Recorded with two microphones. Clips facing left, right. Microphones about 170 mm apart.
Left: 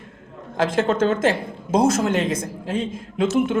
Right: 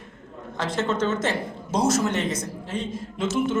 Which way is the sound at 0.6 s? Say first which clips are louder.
Left 6 dB; 90° left.